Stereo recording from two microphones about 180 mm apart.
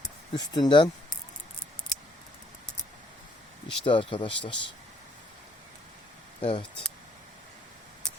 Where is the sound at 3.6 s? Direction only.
25° left (ahead or behind).